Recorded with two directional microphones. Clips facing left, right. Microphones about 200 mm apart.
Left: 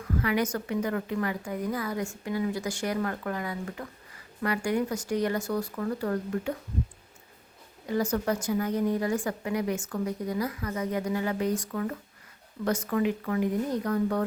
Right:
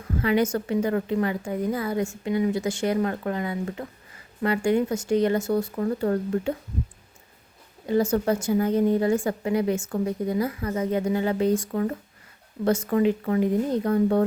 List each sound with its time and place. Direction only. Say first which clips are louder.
0.2 s a woman's voice: right 6 dB; 25° right (ahead or behind)
7.9 s a woman's voice: right 5 dB; 25° right (ahead or behind)